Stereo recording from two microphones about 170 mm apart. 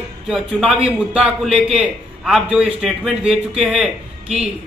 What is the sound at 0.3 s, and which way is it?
A man's voice, centre (ahead or behind).